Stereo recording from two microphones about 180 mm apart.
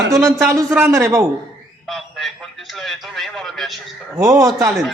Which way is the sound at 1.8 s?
Centre (ahead or behind).